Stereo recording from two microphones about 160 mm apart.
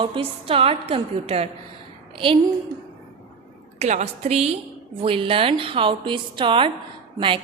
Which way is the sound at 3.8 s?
45° right (ahead or behind).